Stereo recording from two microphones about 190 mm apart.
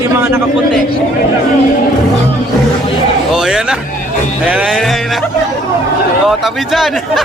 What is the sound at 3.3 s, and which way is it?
Speech, 5° right (ahead or behind).